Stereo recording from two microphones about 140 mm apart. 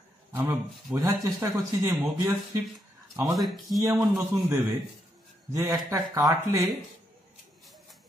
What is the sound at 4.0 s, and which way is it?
A man's voice, 15° right (ahead or behind).